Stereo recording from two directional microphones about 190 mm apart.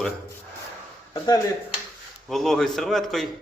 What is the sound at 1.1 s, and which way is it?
Speech, 20° left (ahead or behind).